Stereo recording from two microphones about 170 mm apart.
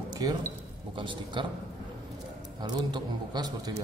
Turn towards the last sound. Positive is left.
turn(degrees=-25)  # may be behind; listen again after turning